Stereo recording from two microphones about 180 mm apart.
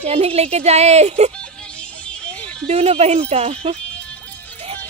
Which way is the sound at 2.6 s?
35° right (ahead or behind).